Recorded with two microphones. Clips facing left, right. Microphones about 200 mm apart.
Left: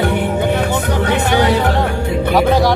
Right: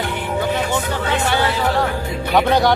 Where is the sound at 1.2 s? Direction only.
15° left (ahead or behind).